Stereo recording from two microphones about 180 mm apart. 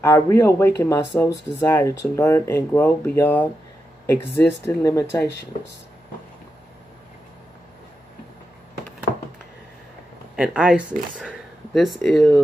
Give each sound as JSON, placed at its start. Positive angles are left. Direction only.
{"t": 0.0, "sound": "speech", "side_deg": 15}
{"t": 10.3, "sound": "speech", "side_deg": -5}